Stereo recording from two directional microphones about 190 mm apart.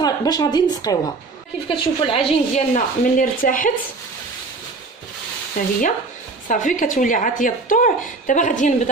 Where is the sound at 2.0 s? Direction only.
40° left (ahead or behind).